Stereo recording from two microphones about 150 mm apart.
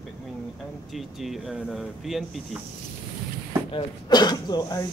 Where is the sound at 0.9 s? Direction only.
Centre (ahead or behind).